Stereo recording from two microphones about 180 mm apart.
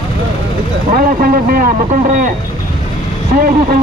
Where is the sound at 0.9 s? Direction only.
55° right (ahead or behind).